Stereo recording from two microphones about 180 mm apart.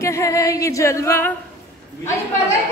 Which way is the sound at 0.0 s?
15° left (ahead or behind).